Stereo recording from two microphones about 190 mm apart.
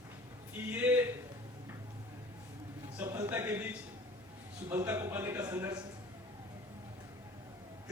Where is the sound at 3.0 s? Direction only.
20° right (ahead or behind).